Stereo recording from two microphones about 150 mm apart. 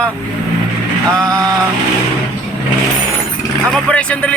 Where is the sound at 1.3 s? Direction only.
25° right (ahead or behind).